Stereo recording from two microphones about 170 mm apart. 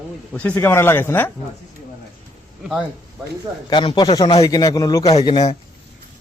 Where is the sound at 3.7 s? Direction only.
25° left (ahead or behind).